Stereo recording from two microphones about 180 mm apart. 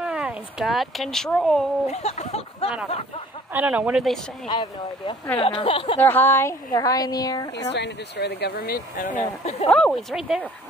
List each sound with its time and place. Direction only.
0.0 s speech: 5° right (ahead or behind)
1.9 s speech: 35° left (ahead or behind)
3.5 s speech: 10° right (ahead or behind)
4.5 s a woman's voice: 25° left (ahead or behind)
5.9 s a woman's voice: 10° left (ahead or behind)
7.7 s speech: 70° left (ahead or behind); by 9.1 s 50° left (ahead or behind)
9.7 s speech: 5° left (ahead or behind)